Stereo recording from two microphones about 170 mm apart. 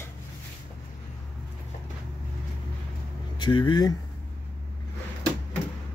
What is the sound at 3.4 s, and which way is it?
Speech, 30° left (ahead or behind).